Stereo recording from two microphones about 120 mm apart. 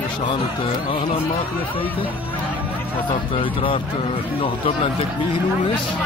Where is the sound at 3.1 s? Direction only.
50° left (ahead or behind).